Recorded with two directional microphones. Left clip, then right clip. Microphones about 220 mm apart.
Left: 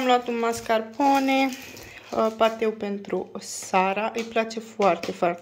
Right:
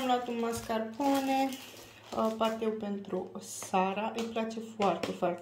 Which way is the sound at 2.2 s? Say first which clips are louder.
Left 9 dB; 30° left (ahead or behind).